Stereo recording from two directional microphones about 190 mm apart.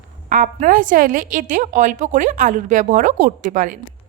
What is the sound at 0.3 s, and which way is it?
A woman's voice, 45° right (ahead or behind).